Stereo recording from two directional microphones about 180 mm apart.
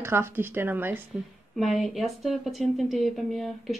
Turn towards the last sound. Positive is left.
turn(degrees=0)  # may be behind; listen again after turning